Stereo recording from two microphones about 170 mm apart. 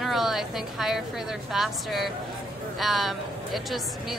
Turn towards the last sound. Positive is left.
turn(degrees=0)  # may be behind; listen again after turning